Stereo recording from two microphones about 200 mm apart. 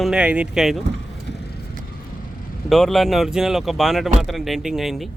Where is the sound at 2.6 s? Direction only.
Centre (ahead or behind).